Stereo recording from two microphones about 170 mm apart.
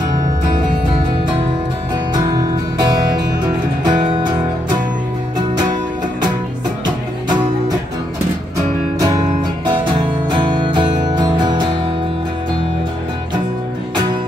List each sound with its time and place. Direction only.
2.3 s music: 25° right (ahead or behind)
10.3 s music: 25° right (ahead or behind)